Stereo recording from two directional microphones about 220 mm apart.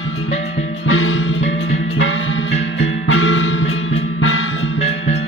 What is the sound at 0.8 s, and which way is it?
Music, 65° left (ahead or behind).